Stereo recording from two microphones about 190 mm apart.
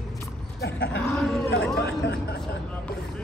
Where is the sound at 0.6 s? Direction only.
60° left (ahead or behind).